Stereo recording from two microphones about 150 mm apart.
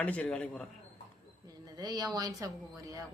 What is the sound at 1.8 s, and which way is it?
Speech, 25° right (ahead or behind).